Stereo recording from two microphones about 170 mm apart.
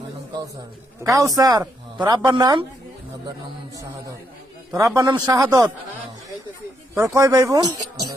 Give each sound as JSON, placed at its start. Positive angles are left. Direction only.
{"t": 1.0, "sound": "speech", "side_deg": -20}
{"t": 4.7, "sound": "speech", "side_deg": -20}
{"t": 7.0, "sound": "speech", "side_deg": -20}